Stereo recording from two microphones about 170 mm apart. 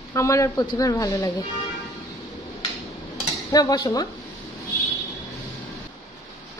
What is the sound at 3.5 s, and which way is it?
Speech, 20° left (ahead or behind).